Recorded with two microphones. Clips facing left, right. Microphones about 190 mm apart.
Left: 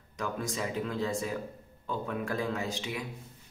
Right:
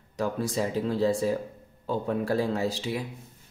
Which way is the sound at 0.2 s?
35° right (ahead or behind).